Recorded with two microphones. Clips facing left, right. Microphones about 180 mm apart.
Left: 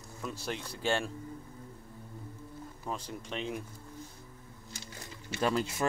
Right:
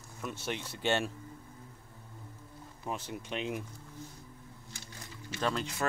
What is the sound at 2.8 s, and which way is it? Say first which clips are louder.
Speech: right 1 dB; 5° right (ahead or behind).